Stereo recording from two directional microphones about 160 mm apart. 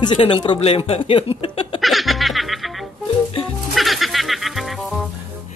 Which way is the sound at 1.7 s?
Centre (ahead or behind).